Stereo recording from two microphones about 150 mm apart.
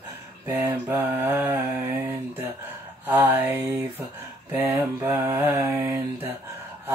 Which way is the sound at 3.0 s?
10° right (ahead or behind).